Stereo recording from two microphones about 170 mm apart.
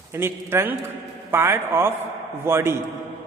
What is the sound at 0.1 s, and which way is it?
A man's voice, 15° right (ahead or behind).